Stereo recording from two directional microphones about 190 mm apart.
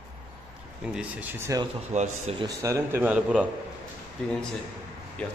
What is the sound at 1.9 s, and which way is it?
Speech, 35° right (ahead or behind).